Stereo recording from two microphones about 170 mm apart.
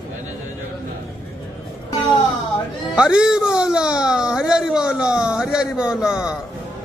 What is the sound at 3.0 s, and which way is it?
Speech, 5° right (ahead or behind).